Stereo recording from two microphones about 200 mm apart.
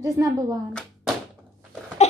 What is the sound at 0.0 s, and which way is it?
Speech, 15° right (ahead or behind).